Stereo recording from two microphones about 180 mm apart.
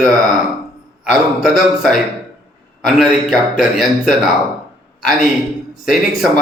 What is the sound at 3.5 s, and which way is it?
Speech, centre (ahead or behind).